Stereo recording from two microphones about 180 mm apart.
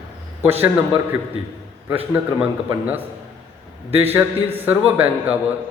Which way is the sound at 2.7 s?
10° right (ahead or behind).